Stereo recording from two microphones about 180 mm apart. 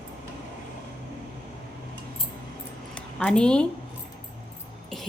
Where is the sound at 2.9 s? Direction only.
5° left (ahead or behind).